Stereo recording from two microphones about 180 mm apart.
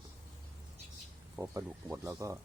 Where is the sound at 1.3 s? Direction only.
15° right (ahead or behind).